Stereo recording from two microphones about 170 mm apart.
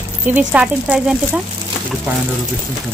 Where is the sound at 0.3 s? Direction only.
5° right (ahead or behind).